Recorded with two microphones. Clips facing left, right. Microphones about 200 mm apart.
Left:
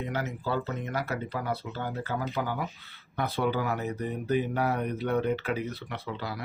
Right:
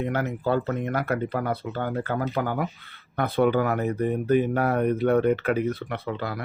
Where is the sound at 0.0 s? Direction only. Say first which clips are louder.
Right 6 dB; 55° right (ahead or behind).